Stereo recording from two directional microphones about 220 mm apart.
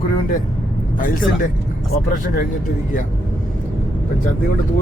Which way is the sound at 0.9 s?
35° left (ahead or behind).